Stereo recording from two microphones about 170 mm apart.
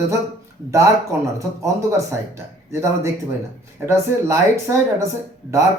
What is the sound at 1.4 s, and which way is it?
Speech, 15° right (ahead or behind).